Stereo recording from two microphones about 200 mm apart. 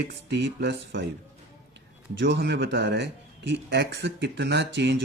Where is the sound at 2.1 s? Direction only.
60° right (ahead or behind).